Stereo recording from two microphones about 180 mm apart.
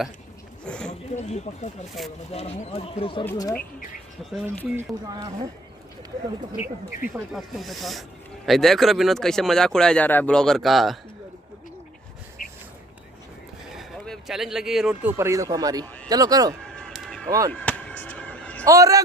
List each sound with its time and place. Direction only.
0.7 s speech: 5° left (ahead or behind)
1.1 s speech: 40° left (ahead or behind)
3.3 s speech: 20° left (ahead or behind)
4.3 s speech: centre (ahead or behind)
4.7 s speech: 20° right (ahead or behind)
7.3 s speech: centre (ahead or behind)
12.4 s a sound: 50° left (ahead or behind)
13.7 s speech: centre (ahead or behind); by 16.5 s 20° right (ahead or behind)
16.7 s a sound: centre (ahead or behind)
18.7 s speech: 20° right (ahead or behind)